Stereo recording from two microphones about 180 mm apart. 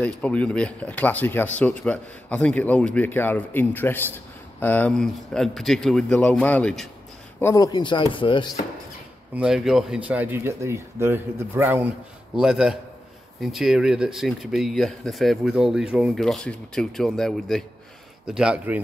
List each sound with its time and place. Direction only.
0.0 s speech: 5° left (ahead or behind)
7.3 s speech: 15° left (ahead or behind)
9.3 s speech: 5° right (ahead or behind)